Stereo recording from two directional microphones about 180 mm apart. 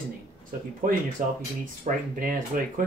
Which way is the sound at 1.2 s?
45° right (ahead or behind).